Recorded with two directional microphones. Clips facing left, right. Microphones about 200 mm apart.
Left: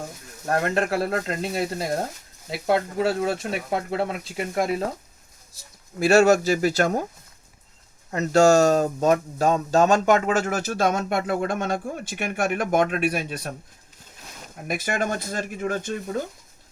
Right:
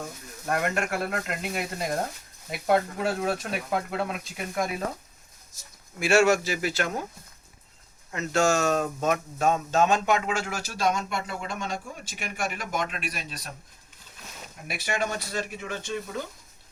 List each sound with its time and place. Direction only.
0.4 s speech: 35° left (ahead or behind)
6.0 s speech: 40° left (ahead or behind)
8.1 s speech: 40° left (ahead or behind); by 13.5 s 55° left (ahead or behind)
14.7 s speech: 45° left (ahead or behind)